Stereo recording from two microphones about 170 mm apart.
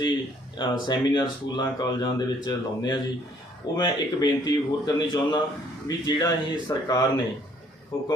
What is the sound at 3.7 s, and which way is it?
Speech, 25° left (ahead or behind).